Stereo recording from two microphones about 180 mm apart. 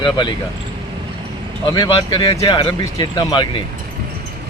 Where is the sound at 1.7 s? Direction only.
25° left (ahead or behind).